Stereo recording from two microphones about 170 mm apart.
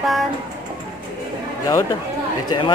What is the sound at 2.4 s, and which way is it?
Speech, 25° left (ahead or behind).